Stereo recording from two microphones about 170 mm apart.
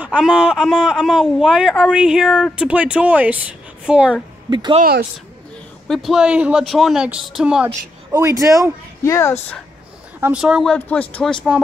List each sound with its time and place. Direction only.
0.0 s speech: 5° right (ahead or behind)
4.5 s speech: 25° right (ahead or behind)
5.9 s speech: centre (ahead or behind)
8.1 s speech: 20° right (ahead or behind)
9.0 s speech: 15° left (ahead or behind)
10.2 s speech: 5° right (ahead or behind)